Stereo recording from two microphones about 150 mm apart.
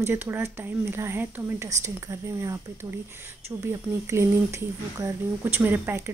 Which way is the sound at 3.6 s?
15° right (ahead or behind).